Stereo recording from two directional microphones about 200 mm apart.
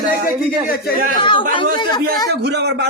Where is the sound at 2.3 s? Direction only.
55° right (ahead or behind).